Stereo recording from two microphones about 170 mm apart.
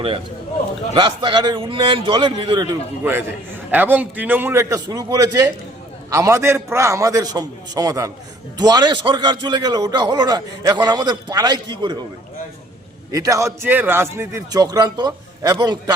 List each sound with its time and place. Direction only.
0.9 s a man's voice: 25° right (ahead or behind)
3.0 s a man's voice: 10° right (ahead or behind)
13.1 s a man's voice: 20° right (ahead or behind)